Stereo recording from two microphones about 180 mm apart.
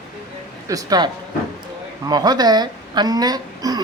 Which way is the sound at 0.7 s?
20° right (ahead or behind).